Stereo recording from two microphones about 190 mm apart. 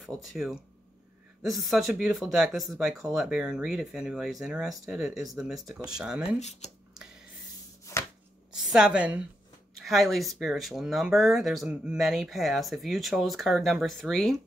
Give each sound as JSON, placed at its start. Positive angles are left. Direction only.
{"t": 0.0, "sound": "speech", "side_deg": 0}
{"t": 6.4, "sound": "speech", "side_deg": 35}
{"t": 7.9, "sound": "chopping", "side_deg": 15}
{"t": 8.5, "sound": "a woman's voice", "side_deg": -5}